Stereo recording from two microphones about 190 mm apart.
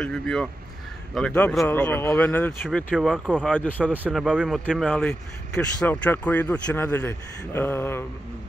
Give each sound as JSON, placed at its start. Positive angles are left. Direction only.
{"t": 0.0, "sound": "a man's voice", "side_deg": 5}
{"t": 3.5, "sound": "a man's voice", "side_deg": 5}
{"t": 3.9, "sound": "a man's voice", "side_deg": -5}